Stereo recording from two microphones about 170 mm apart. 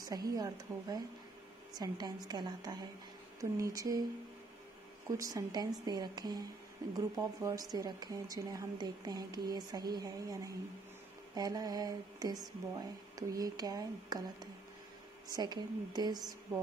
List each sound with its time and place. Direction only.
0.1 s speech: 20° right (ahead or behind)
5.1 s speech: 20° right (ahead or behind)